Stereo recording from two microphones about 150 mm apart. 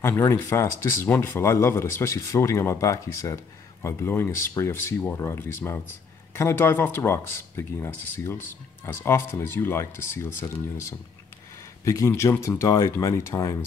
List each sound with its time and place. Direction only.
0.0 s speech: 15° left (ahead or behind)
11.8 s speech: 20° left (ahead or behind)